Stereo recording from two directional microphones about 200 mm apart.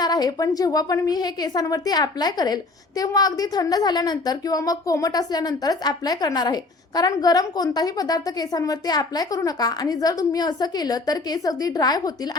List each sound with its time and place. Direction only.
0.0 s a woman's voice: 20° left (ahead or behind)